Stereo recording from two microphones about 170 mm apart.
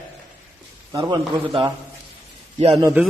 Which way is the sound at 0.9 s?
25° right (ahead or behind).